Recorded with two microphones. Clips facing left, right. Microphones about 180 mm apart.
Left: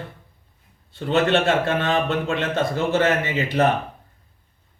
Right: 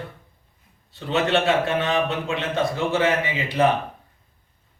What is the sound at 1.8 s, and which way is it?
Speech, 60° left (ahead or behind).